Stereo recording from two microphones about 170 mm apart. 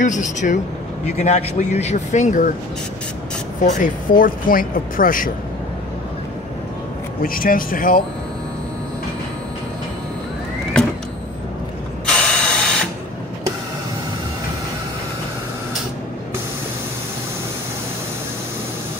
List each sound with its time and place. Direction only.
0.0 s speech: 45° left (ahead or behind)
3.6 s speech: 50° left (ahead or behind)
7.2 s speech: 55° left (ahead or behind)
12.1 s mechanisms: 5° left (ahead or behind)